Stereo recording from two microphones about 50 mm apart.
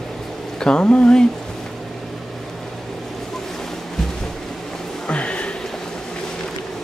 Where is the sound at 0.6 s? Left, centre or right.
Centre.